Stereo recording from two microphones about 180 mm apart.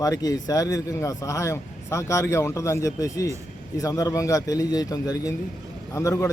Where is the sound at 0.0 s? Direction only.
20° left (ahead or behind).